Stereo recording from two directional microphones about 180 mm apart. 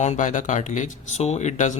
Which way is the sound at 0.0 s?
40° left (ahead or behind).